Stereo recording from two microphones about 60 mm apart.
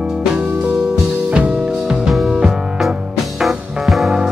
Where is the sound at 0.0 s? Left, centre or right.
Centre.